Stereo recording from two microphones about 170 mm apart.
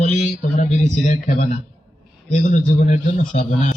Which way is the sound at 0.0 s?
45° left (ahead or behind).